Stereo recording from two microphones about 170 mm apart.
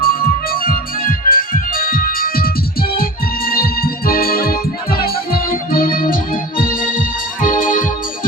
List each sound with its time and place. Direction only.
0.0 s music: 60° left (ahead or behind)